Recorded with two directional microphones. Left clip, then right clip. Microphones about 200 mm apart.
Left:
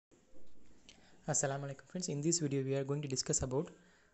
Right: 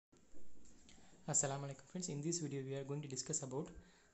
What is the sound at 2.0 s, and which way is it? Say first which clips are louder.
A man's voice: left 7 dB; 25° left (ahead or behind).